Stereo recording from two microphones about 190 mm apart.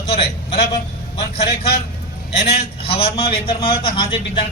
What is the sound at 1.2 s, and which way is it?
Speech, 60° left (ahead or behind).